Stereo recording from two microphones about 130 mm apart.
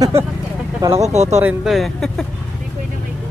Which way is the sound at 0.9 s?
55° right (ahead or behind).